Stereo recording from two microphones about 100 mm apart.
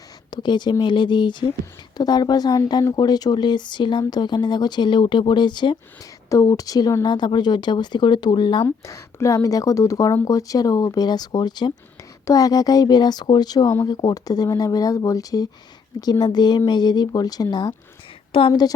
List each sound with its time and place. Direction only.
0.3 s speech: 50° left (ahead or behind)
6.3 s speech: 35° left (ahead or behind); by 8.6 s 50° left (ahead or behind)
8.6 s speech: 30° left (ahead or behind); by 17.7 s 45° left (ahead or behind)
18.3 s a woman's voice: 65° left (ahead or behind)